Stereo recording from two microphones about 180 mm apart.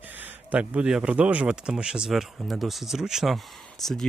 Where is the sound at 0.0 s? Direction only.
10° right (ahead or behind).